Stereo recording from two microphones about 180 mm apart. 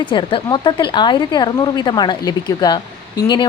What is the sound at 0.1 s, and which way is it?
Speech, 25° left (ahead or behind).